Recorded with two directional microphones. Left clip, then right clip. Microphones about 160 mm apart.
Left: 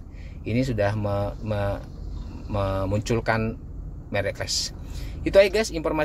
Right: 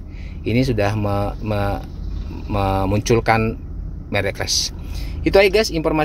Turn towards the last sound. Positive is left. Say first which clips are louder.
# right 7 dB
turn(degrees=-10)  # may be behind; listen again after turning